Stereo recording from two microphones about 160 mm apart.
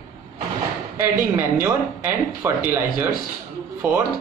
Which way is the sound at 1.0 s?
15° right (ahead or behind).